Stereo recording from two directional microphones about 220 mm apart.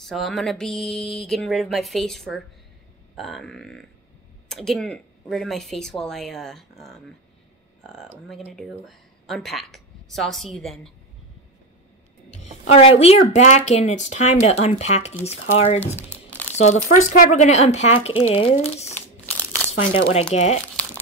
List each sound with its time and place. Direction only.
0.0 s speech: centre (ahead or behind)
8.0 s speech: centre (ahead or behind)
12.4 s speech: 30° left (ahead or behind)